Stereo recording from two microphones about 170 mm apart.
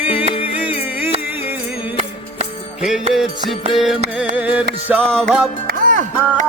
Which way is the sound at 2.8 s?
5° right (ahead or behind).